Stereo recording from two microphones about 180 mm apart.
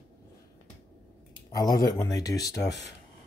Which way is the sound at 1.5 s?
20° left (ahead or behind).